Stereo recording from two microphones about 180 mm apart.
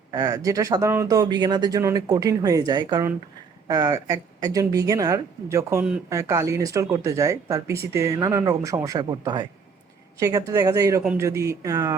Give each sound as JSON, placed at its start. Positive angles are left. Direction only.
{"t": 0.1, "sound": "speech", "side_deg": -20}